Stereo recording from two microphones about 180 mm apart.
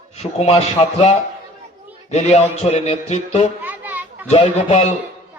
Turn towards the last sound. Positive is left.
turn(degrees=35)  # may be behind; listen again after turning